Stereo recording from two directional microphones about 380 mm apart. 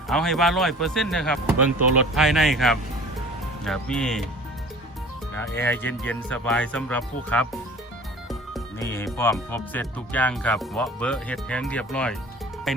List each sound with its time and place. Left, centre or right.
0.1 s speech: centre
5.3 s speech: centre
12.7 s music: centre